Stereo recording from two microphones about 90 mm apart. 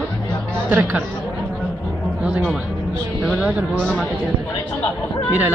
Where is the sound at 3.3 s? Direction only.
5° right (ahead or behind).